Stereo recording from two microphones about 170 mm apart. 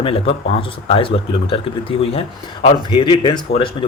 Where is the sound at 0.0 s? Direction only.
35° left (ahead or behind).